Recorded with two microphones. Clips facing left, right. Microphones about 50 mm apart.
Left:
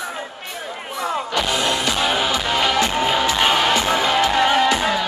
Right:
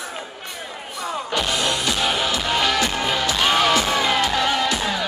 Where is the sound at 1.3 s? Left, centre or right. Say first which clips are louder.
Even; centre.